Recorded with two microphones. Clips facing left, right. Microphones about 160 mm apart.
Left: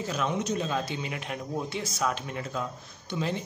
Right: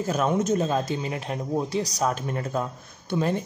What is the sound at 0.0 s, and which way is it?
Speech, 45° right (ahead or behind).